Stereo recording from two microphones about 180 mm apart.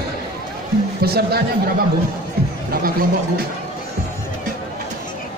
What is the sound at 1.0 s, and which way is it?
Speech, 60° right (ahead or behind).